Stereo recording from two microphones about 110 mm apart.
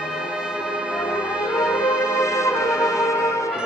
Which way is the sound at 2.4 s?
25° left (ahead or behind).